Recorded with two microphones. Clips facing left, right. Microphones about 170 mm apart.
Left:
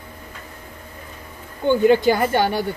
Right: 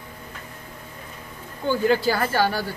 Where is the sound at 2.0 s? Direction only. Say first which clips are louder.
Left 4 dB; 20° left (ahead or behind).